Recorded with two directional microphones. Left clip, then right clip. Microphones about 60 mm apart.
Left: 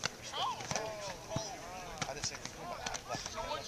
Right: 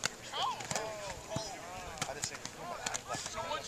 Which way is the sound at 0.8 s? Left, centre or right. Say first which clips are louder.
Right 1 dB; centre.